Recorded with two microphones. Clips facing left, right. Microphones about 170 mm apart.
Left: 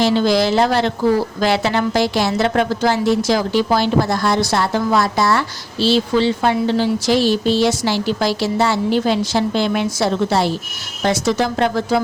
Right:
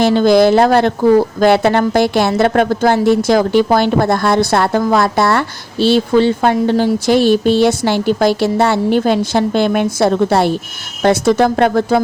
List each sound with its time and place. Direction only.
0.0 s a woman's voice: 50° right (ahead or behind)